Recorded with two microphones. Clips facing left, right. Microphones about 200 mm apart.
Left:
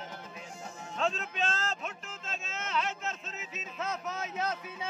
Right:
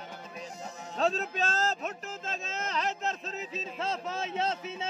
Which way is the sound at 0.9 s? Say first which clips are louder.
Right 4 dB; 35° right (ahead or behind).